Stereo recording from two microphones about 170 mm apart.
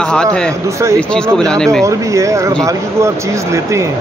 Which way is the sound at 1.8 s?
20° right (ahead or behind).